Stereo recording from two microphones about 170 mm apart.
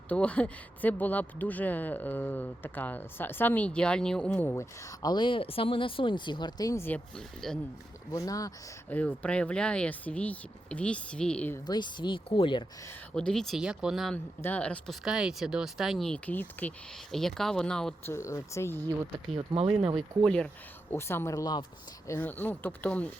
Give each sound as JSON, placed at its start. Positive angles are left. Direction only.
{"t": 0.1, "sound": "speech", "side_deg": 5}
{"t": 7.4, "sound": "speech", "side_deg": 0}
{"t": 8.1, "sound": "speech", "side_deg": 20}
{"t": 9.0, "sound": "speech", "side_deg": 10}
{"t": 11.6, "sound": "speech", "side_deg": 25}
{"t": 13.1, "sound": "speech", "side_deg": 5}
{"t": 18.1, "sound": "speech", "side_deg": 15}
{"t": 19.5, "sound": "speech", "side_deg": -35}
{"t": 20.0, "sound": "speech", "side_deg": 5}
{"t": 20.9, "sound": "speech", "side_deg": 15}